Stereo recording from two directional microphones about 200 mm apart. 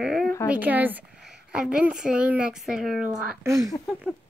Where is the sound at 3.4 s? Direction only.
15° right (ahead or behind).